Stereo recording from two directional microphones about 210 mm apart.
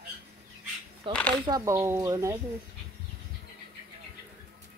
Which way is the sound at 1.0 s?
25° right (ahead or behind).